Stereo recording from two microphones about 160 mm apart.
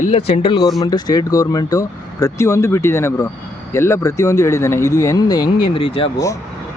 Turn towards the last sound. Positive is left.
turn(degrees=35)  # may be behind; listen again after turning